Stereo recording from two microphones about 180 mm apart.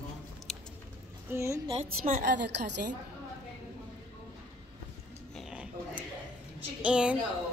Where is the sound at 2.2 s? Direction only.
70° right (ahead or behind).